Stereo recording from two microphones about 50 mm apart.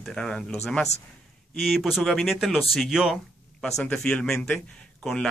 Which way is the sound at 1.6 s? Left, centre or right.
Centre.